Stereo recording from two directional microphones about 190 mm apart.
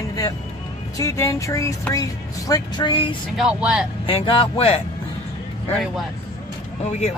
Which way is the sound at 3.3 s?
5° right (ahead or behind).